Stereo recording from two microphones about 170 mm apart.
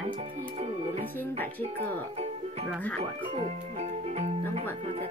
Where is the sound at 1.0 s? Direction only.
10° left (ahead or behind).